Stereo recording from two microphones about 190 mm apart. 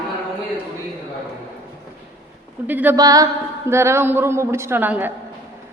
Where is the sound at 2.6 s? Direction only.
10° right (ahead or behind).